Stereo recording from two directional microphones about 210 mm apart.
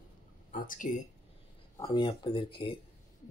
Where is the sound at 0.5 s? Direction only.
40° left (ahead or behind).